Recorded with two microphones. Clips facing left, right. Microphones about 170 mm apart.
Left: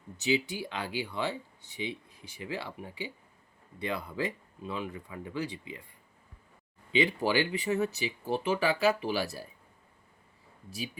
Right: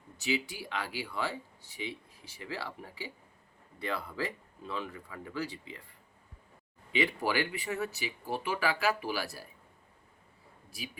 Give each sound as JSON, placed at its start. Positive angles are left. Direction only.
{"t": 0.2, "sound": "speech", "side_deg": 25}
{"t": 6.9, "sound": "speech", "side_deg": 25}